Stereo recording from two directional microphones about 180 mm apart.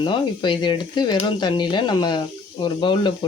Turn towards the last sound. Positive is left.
turn(degrees=25)  # may be behind; listen again after turning